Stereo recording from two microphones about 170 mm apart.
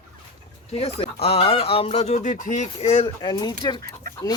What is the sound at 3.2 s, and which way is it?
Speech, 25° left (ahead or behind).